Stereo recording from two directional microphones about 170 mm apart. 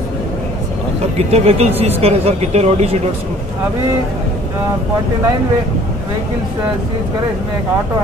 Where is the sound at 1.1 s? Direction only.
40° right (ahead or behind).